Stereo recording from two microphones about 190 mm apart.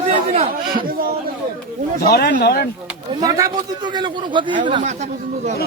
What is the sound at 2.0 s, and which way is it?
Speech, 55° left (ahead or behind).